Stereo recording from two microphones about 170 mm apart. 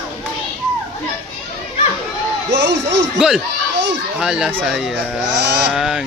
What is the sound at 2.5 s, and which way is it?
Speech, 90° right.